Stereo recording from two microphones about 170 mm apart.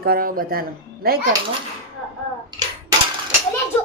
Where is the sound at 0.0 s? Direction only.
60° right (ahead or behind).